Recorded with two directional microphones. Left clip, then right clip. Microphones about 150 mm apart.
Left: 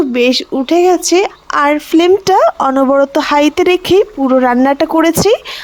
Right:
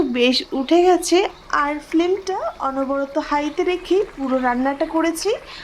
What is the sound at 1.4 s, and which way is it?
Speech, 70° left (ahead or behind).